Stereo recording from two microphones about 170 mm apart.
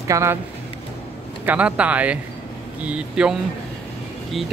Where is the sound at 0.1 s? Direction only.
15° right (ahead or behind).